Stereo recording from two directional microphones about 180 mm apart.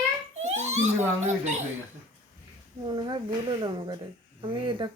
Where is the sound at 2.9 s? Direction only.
25° right (ahead or behind).